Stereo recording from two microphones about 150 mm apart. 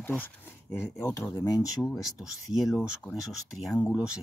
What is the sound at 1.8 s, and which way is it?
Speech, centre (ahead or behind).